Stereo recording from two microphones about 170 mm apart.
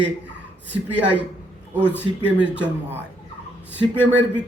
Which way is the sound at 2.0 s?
90° right.